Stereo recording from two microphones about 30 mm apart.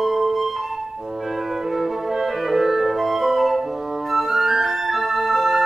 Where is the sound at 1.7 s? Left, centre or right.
Centre.